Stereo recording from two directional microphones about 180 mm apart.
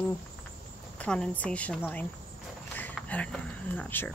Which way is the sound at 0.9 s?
5° left (ahead or behind).